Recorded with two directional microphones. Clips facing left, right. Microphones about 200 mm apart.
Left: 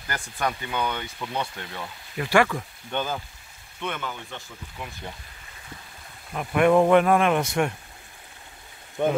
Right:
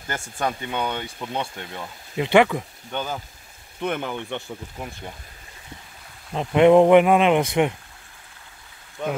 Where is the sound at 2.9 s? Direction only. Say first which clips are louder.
Even; 5° right (ahead or behind).